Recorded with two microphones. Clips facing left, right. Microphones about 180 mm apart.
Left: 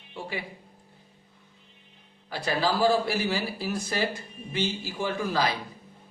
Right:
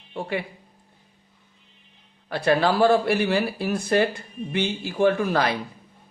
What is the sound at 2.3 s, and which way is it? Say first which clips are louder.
Speech: right 6 dB; 60° right (ahead or behind).